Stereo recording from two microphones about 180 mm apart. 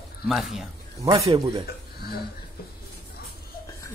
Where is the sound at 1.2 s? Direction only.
25° right (ahead or behind).